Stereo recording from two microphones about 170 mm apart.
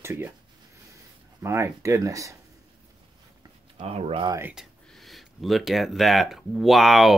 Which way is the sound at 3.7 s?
40° right (ahead or behind).